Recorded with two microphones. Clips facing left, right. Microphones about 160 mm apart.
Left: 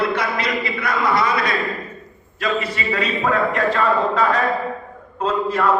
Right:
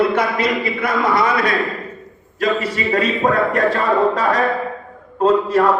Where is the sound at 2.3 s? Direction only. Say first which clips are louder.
Right 4 dB; 40° right (ahead or behind).